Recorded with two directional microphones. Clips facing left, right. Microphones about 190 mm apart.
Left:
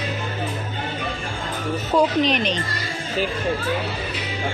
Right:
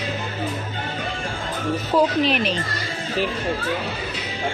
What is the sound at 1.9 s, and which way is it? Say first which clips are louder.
Speech: left 1 dB; 5° right (ahead or behind).